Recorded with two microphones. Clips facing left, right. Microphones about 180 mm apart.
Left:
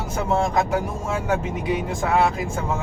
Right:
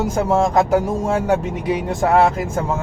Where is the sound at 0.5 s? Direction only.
35° right (ahead or behind).